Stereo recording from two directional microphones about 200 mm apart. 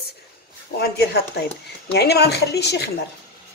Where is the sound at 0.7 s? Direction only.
55° left (ahead or behind).